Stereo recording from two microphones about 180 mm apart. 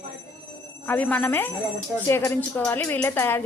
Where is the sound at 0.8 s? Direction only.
10° left (ahead or behind).